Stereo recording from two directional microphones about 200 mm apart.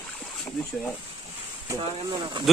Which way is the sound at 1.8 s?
25° right (ahead or behind).